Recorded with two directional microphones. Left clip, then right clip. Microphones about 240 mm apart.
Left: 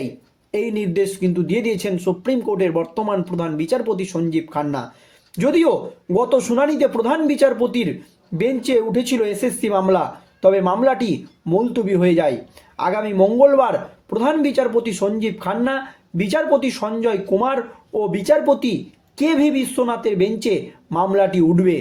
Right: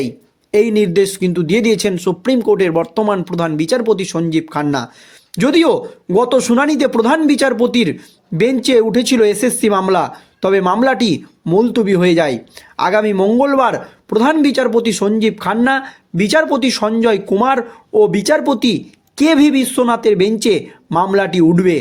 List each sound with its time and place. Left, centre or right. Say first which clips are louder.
0.5 s speech: right 9 dB; right